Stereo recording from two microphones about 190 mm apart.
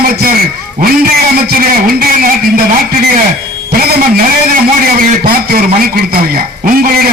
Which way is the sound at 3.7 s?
55° right (ahead or behind).